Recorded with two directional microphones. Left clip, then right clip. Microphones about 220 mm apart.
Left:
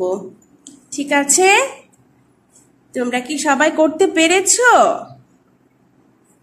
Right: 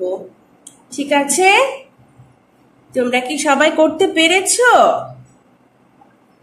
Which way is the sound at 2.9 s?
15° left (ahead or behind).